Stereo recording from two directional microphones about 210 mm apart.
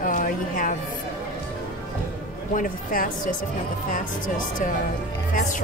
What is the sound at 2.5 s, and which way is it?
Speech, 40° left (ahead or behind).